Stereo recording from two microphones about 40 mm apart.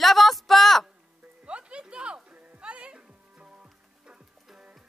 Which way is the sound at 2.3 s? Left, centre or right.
Right.